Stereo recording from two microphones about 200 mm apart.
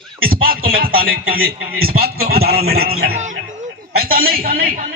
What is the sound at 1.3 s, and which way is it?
A man's voice, 50° right (ahead or behind).